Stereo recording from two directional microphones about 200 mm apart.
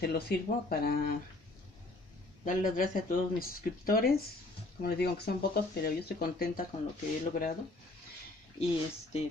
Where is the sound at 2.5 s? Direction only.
45° left (ahead or behind).